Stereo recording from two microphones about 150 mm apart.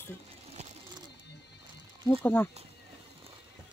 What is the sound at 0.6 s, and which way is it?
Bird, 50° right (ahead or behind).